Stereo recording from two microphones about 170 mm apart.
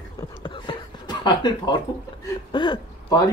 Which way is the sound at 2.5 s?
25° left (ahead or behind).